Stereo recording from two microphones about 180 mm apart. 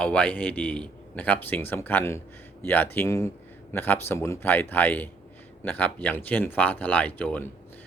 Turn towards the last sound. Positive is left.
turn(degrees=10)  # may be behind; listen again after turning